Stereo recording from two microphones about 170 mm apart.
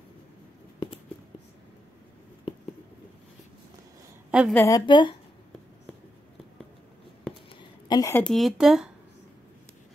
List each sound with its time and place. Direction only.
4.3 s a woman's voice: 5° right (ahead or behind)
4.6 s a woman's voice: 20° left (ahead or behind)
7.9 s speech: 20° left (ahead or behind)
8.2 s speech: centre (ahead or behind)